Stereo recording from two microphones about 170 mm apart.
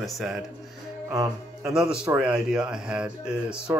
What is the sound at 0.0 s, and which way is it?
Speech, centre (ahead or behind).